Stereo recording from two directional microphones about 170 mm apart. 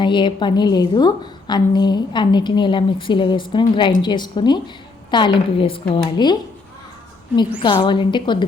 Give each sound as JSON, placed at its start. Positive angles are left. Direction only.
{"t": 0.0, "sound": "a woman's voice", "side_deg": 25}
{"t": 7.6, "sound": "a woman's voice", "side_deg": 30}